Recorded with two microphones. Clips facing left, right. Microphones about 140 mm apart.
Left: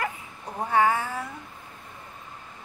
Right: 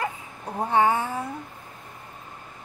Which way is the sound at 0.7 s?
25° right (ahead or behind).